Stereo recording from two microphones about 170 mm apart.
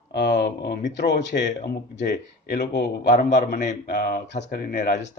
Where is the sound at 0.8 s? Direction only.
90° left.